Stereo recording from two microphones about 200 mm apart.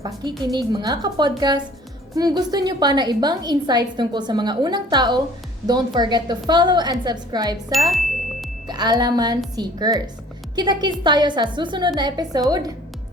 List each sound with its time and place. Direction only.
0.0 s a woman's voice: 20° right (ahead or behind)
7.9 s music: centre (ahead or behind)
8.6 s a woman's voice: 20° right (ahead or behind)